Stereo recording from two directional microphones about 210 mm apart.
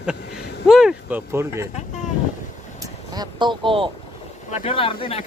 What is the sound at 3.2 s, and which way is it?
Speech, 20° right (ahead or behind).